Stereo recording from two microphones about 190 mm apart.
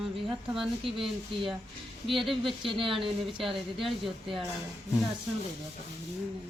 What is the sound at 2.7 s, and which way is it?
Speech, 30° right (ahead or behind).